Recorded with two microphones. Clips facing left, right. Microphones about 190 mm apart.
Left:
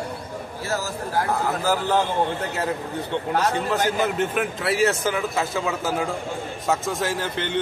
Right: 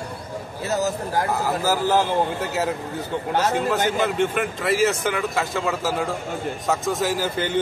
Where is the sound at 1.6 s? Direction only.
5° right (ahead or behind).